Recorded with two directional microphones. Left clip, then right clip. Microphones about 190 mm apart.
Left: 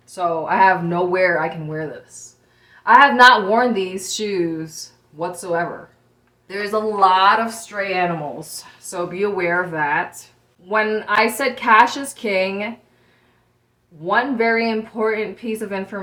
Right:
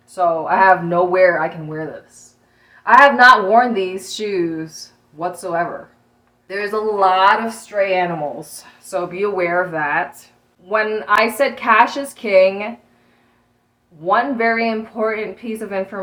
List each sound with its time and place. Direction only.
0.1 s a woman's voice: 15° left (ahead or behind)
14.0 s a woman's voice: 15° left (ahead or behind)